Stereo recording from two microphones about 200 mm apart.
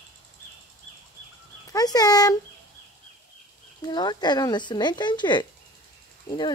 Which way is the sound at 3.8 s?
20° left (ahead or behind).